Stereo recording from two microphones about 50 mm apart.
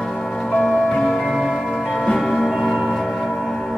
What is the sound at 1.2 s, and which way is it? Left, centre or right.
Music, centre.